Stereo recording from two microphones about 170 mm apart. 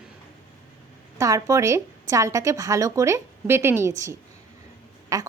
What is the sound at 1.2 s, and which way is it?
A woman's voice, 20° right (ahead or behind).